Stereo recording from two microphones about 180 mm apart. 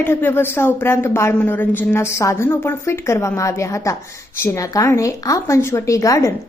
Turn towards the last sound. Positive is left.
turn(degrees=15)  # may be behind; listen again after turning